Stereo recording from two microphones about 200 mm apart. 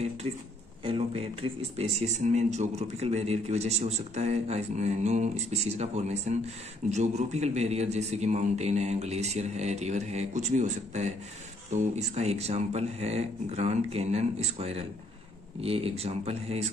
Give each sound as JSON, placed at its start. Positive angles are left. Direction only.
{"t": 0.8, "sound": "speech", "side_deg": -30}